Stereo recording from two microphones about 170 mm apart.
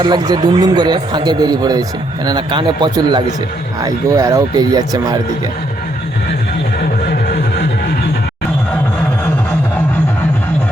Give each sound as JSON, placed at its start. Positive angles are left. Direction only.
{"t": 0.0, "sound": "a man's voice", "side_deg": -25}